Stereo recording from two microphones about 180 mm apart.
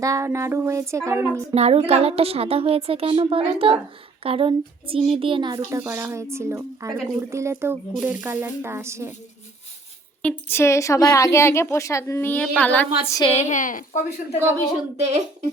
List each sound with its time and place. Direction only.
0.0 s speech: 15° right (ahead or behind)
1.5 s a woman's voice: 35° right (ahead or behind); by 9.1 s 15° right (ahead or behind)
10.2 s a woman's voice: 15° left (ahead or behind)
13.3 s speech: 40° left (ahead or behind)